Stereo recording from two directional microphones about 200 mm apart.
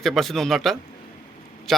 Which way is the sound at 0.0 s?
Centre (ahead or behind).